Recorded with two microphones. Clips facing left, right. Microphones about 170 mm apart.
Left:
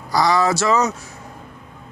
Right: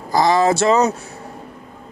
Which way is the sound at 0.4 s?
30° right (ahead or behind).